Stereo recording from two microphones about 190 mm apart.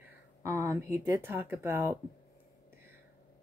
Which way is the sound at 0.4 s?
15° right (ahead or behind).